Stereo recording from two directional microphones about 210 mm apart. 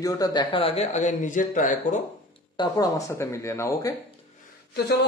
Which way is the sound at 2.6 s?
15° left (ahead or behind).